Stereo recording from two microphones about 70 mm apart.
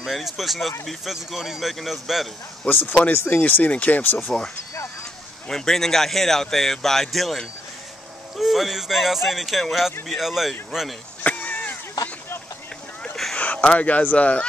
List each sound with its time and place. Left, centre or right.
0.0 s speech: centre
2.6 s speech: centre
4.2 s speech: centre
5.5 s speech: centre
11.2 s a sound: left
13.0 s a sound: centre
13.4 s speech: left